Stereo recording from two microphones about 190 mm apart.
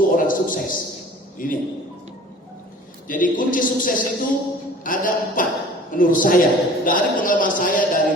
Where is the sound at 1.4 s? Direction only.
45° left (ahead or behind).